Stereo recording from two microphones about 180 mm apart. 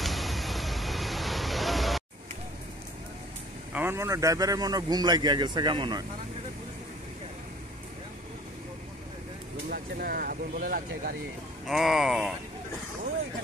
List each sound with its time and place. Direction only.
0.0 s vehicle: centre (ahead or behind)
3.7 s a man's voice: 15° right (ahead or behind)
9.7 s speech: 55° right (ahead or behind)
11.6 s speech: centre (ahead or behind)